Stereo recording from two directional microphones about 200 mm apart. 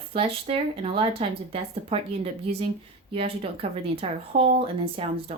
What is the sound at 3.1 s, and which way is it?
Speech, 30° right (ahead or behind).